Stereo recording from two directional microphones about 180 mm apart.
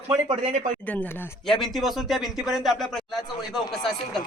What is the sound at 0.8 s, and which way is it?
Speech, 10° left (ahead or behind).